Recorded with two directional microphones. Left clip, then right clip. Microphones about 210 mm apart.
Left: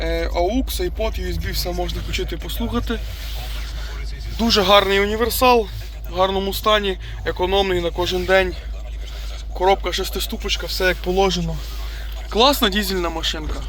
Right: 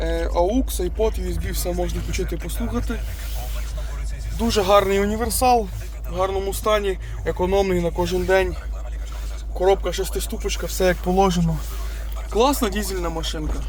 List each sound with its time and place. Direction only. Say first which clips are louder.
0.0 s speech: even; 15° right (ahead or behind)
1.8 s speech: left 1 dB; 5° right (ahead or behind)
4.4 s speech: left 4 dB; 10° left (ahead or behind)
4.6 s speech: left 2 dB; 5° right (ahead or behind)
9.6 s speech: left 2 dB; centre (ahead or behind)
10.8 s speech: even; 25° right (ahead or behind)
12.3 s speech: left 4 dB; centre (ahead or behind)